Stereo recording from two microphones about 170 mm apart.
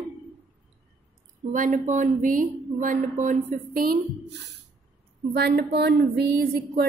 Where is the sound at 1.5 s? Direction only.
50° right (ahead or behind).